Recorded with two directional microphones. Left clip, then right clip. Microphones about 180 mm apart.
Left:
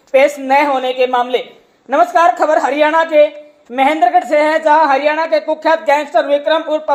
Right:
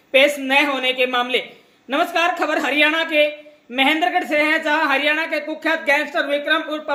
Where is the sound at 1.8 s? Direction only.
15° right (ahead or behind).